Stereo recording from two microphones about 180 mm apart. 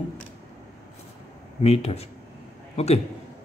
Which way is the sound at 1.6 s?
35° left (ahead or behind).